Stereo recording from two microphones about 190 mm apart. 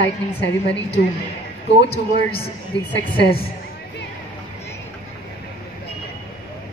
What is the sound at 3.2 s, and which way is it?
Speech, 55° left (ahead or behind).